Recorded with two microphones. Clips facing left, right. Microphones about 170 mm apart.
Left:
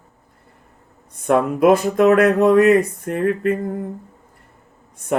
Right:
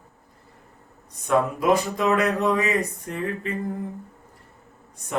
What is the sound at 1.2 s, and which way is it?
Speech, 55° left (ahead or behind).